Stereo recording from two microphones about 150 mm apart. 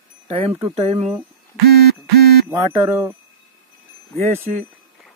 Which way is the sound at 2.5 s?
15° right (ahead or behind).